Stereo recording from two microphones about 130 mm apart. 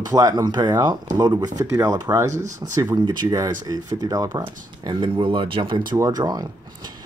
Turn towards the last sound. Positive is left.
turn(degrees=-35)  # may be behind; listen again after turning